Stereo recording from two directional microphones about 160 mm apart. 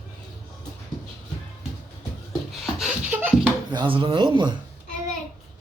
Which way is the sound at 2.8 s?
10° right (ahead or behind).